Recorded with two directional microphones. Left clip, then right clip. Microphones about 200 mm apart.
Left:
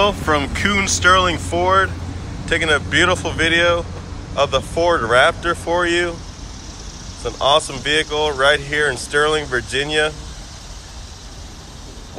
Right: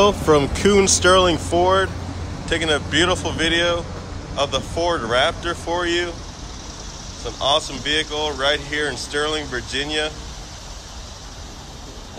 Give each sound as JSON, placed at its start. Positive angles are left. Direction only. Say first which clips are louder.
{"t": 0.0, "sound": "speech", "louder": "right 1 dB", "side_deg": -30}
{"t": 7.2, "sound": "speech", "louder": "left 4 dB", "side_deg": 0}